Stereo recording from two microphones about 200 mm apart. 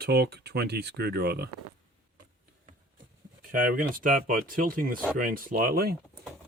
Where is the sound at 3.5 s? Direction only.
45° right (ahead or behind).